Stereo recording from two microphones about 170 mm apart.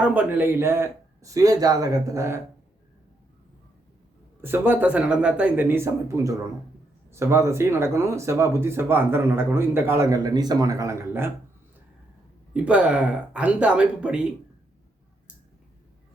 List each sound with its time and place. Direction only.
0.0 s speech: 10° right (ahead or behind)
4.4 s speech: 15° right (ahead or behind)
12.6 s speech: 5° right (ahead or behind)